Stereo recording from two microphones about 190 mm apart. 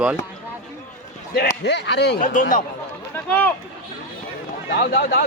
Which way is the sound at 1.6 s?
65° left (ahead or behind).